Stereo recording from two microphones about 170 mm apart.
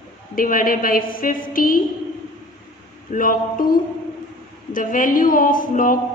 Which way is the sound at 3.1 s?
55° left (ahead or behind).